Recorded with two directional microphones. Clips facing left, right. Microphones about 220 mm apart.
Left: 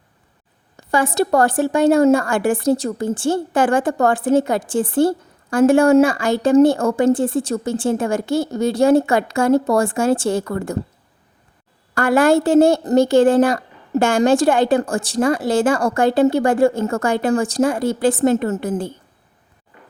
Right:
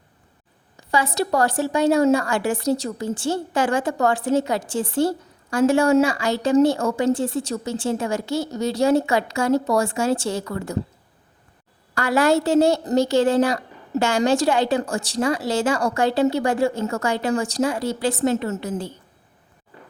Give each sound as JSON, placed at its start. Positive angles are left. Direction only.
{"t": 0.9, "sound": "a woman's voice", "side_deg": 50}
{"t": 11.9, "sound": "a woman's voice", "side_deg": 50}